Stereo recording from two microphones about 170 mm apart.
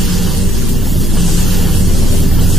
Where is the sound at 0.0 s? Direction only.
Centre (ahead or behind).